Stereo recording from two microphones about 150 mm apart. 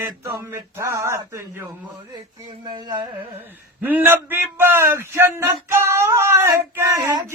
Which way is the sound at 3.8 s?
10° right (ahead or behind).